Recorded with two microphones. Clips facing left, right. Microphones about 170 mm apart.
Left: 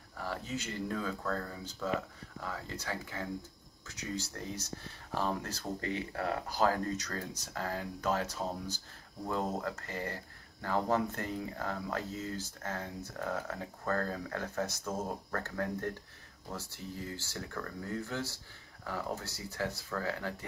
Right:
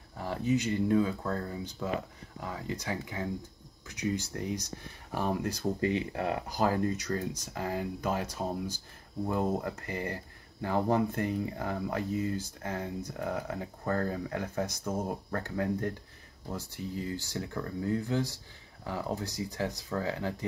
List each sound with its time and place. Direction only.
0.1 s speech: 20° right (ahead or behind)